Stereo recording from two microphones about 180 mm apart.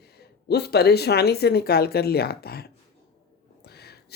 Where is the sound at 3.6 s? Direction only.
65° left (ahead or behind).